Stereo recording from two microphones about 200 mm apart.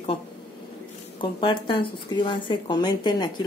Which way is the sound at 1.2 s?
25° left (ahead or behind).